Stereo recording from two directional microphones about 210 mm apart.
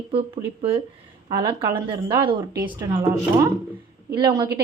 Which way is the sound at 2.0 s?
25° right (ahead or behind).